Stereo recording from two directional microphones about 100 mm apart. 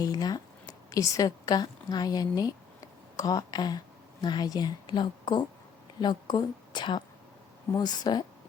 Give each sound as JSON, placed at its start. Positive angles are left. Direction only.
{"t": 0.0, "sound": "a woman's voice", "side_deg": 40}